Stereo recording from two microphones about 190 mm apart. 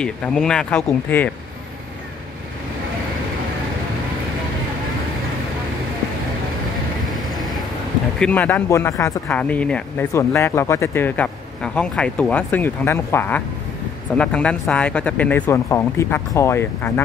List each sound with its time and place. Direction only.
0.0 s speech: 5° left (ahead or behind)
7.1 s vehicle: centre (ahead or behind)
8.2 s speech: 5° left (ahead or behind)